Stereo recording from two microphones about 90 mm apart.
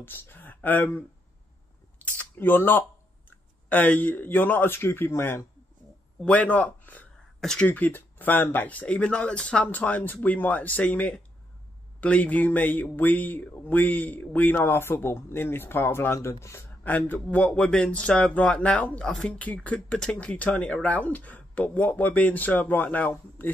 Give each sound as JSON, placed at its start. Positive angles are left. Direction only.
{"t": 0.0, "sound": "speech", "side_deg": 25}
{"t": 2.0, "sound": "camera", "side_deg": 20}
{"t": 3.3, "sound": "speech", "side_deg": 20}
{"t": 16.8, "sound": "speech", "side_deg": 20}